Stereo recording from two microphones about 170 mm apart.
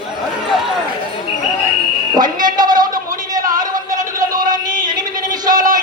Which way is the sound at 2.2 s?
25° right (ahead or behind).